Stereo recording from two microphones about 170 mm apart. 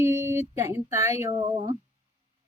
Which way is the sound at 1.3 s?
30° right (ahead or behind).